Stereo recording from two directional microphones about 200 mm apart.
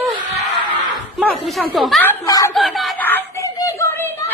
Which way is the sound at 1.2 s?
Centre (ahead or behind).